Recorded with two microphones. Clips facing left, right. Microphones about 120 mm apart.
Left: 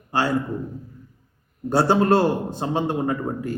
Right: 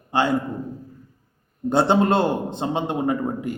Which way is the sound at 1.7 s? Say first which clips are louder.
Even; 20° right (ahead or behind).